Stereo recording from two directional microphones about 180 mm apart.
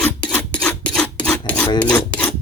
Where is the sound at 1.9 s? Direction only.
10° left (ahead or behind).